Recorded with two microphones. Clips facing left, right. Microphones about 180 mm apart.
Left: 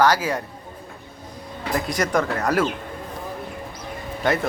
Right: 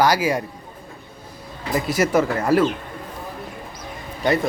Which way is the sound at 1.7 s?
5° right (ahead or behind).